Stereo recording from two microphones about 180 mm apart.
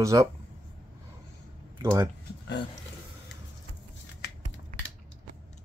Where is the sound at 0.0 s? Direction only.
15° right (ahead or behind).